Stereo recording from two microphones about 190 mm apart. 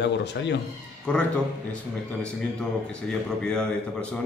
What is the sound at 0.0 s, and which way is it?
Speech, 65° left (ahead or behind).